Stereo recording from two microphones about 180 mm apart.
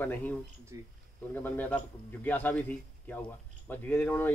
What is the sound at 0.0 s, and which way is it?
Speech, 10° left (ahead or behind).